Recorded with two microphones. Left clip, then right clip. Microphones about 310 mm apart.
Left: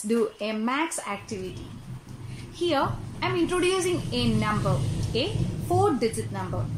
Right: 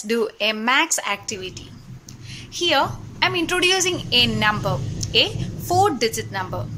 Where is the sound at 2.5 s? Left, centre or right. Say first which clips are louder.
Right 6 dB; right.